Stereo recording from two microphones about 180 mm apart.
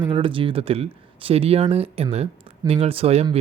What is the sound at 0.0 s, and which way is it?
Speech, 30° right (ahead or behind).